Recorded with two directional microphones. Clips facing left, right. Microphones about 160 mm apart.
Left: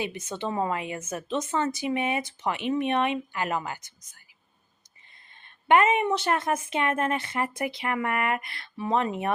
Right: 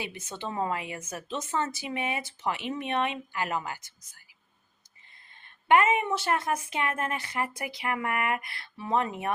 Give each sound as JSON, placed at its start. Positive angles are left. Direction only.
{"t": 0.3, "sound": "speech", "side_deg": 20}
{"t": 5.6, "sound": "speech", "side_deg": 20}